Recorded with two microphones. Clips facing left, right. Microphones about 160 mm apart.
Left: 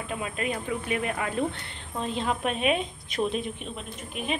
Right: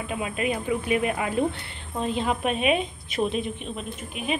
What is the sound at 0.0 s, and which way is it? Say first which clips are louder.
Speech: right 3 dB; 5° right (ahead or behind).